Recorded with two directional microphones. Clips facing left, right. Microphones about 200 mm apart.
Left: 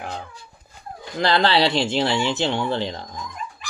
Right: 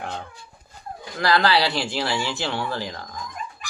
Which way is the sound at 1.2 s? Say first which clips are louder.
Left 2 dB; 25° left (ahead or behind).